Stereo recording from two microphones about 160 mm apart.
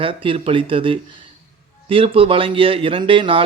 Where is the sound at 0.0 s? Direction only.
35° right (ahead or behind).